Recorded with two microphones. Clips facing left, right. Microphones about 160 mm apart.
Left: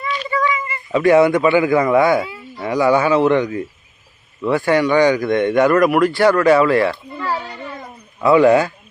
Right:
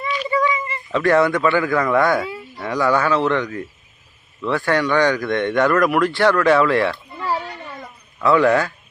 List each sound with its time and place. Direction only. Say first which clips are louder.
0.3 s a sound: even; 25° right (ahead or behind)
0.9 s speech: left 4 dB; 10° left (ahead or behind)
8.2 s speech: left 4 dB; 10° left (ahead or behind)